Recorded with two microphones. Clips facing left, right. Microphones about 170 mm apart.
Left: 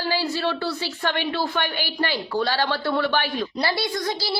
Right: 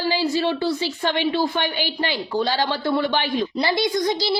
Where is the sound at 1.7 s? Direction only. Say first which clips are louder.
Right 1 dB; 45° left (ahead or behind).